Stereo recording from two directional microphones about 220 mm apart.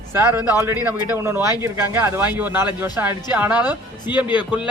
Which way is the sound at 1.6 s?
10° right (ahead or behind).